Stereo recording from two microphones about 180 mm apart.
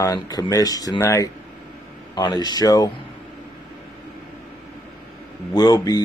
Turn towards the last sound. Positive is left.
turn(degrees=20)  # may be behind; listen again after turning